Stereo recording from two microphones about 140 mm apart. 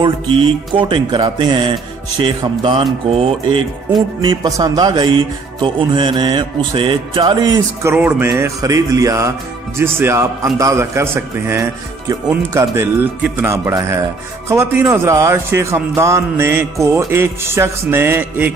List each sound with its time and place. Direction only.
0.0 s speech: 35° right (ahead or behind)
7.9 s a man's voice: 15° right (ahead or behind)